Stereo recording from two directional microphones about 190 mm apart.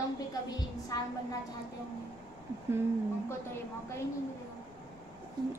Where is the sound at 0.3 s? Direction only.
20° left (ahead or behind).